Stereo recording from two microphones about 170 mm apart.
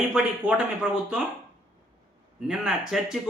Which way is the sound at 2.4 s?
5° right (ahead or behind).